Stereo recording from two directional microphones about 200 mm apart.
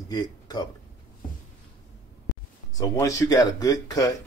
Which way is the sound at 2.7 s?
15° left (ahead or behind).